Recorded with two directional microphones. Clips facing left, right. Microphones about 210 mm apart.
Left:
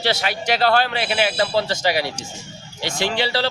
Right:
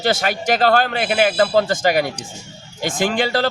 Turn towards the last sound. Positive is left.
turn(degrees=-50)  # may be behind; listen again after turning